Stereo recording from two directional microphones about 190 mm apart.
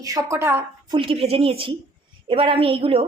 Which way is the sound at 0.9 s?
30° right (ahead or behind).